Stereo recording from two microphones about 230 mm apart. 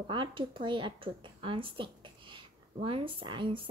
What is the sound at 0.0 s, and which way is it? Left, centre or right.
Speech, right.